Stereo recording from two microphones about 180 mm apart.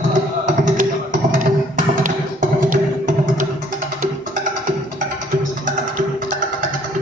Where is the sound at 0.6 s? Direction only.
50° right (ahead or behind).